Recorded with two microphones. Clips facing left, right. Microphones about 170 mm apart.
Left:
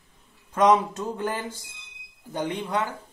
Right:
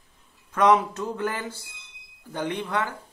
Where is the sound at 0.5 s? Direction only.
15° left (ahead or behind).